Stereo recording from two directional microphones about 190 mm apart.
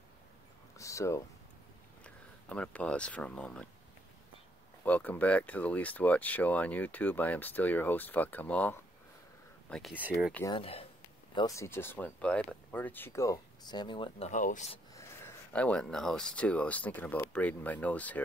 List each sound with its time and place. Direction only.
0.7 s a sound: 15° left (ahead or behind)
2.0 s speech: 5° left (ahead or behind)
4.8 s speech: 10° left (ahead or behind)
10.0 s speech: 10° right (ahead or behind)
10.5 s speech: 30° left (ahead or behind)
11.3 s speech: 15° left (ahead or behind)
14.3 s speech: 40° left (ahead or behind)
15.0 s speech: 15° left (ahead or behind)